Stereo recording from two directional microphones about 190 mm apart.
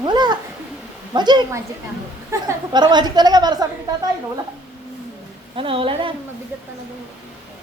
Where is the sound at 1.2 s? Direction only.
20° right (ahead or behind).